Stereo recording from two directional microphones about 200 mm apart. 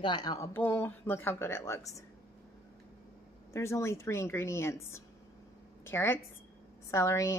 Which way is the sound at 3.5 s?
15° left (ahead or behind).